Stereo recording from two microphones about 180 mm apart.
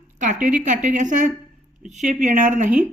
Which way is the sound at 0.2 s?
45° right (ahead or behind).